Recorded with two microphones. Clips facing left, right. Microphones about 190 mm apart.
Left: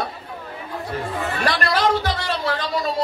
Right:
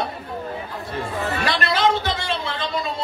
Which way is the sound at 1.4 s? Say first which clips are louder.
Left 1 dB; 25° right (ahead or behind).